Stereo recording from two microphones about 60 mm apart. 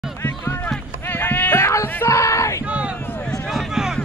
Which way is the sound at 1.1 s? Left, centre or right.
Left.